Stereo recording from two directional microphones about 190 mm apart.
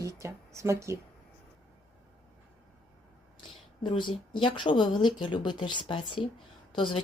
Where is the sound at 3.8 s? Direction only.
25° left (ahead or behind).